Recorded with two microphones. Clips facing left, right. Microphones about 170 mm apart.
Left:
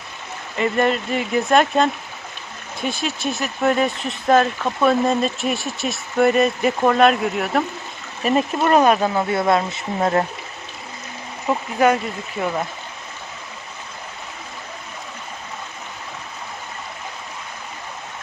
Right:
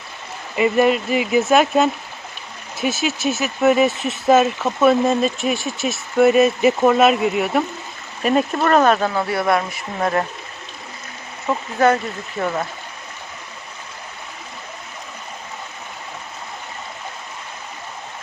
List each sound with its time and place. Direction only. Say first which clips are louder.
0.5 s speech: right 3 dB; 10° right (ahead or behind); by 10.2 s 25° left (ahead or behind)
11.4 s speech: even; 15° left (ahead or behind)